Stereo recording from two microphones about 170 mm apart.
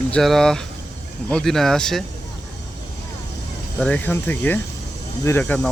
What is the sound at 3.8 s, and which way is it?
Speech, 10° left (ahead or behind).